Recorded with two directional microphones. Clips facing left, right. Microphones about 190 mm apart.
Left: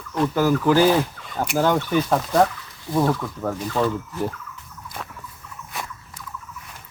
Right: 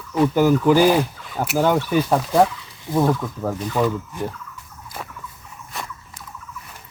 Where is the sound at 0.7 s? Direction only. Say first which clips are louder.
Right 2 dB; 10° right (ahead or behind).